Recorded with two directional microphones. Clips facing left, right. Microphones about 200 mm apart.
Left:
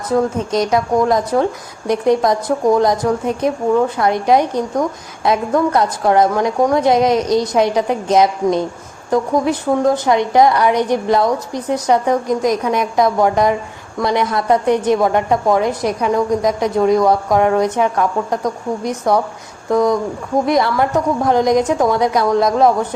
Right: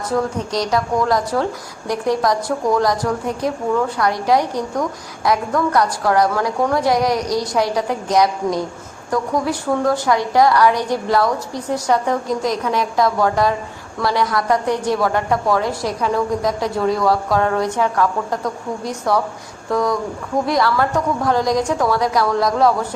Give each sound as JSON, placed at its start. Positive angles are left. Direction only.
{"t": 0.1, "sound": "a woman's voice", "side_deg": 20}